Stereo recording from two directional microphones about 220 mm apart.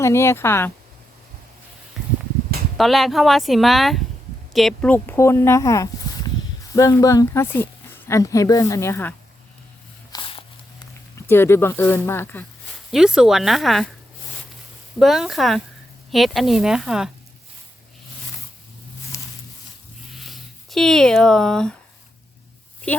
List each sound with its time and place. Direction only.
0.0 s speech: 10° left (ahead or behind)
2.7 s speech: centre (ahead or behind)
10.1 s dog: 20° left (ahead or behind)
11.3 s speech: 10° left (ahead or behind)
12.9 s speech: 5° right (ahead or behind)
14.9 s speech: centre (ahead or behind)
19.1 s a sound: 15° left (ahead or behind)
20.1 s speech: centre (ahead or behind)